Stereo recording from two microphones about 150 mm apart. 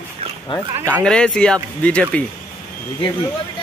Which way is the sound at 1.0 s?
5° left (ahead or behind).